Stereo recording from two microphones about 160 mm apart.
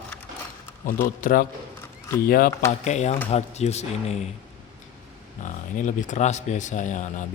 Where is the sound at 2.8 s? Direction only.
45° left (ahead or behind).